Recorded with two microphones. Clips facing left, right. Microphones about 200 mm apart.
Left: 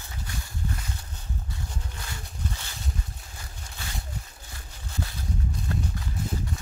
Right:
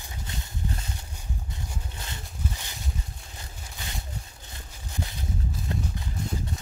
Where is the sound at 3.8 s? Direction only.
15° right (ahead or behind).